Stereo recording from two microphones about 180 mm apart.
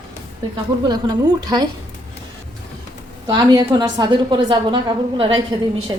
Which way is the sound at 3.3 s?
25° right (ahead or behind).